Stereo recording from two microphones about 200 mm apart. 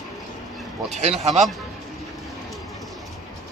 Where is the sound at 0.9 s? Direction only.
35° right (ahead or behind).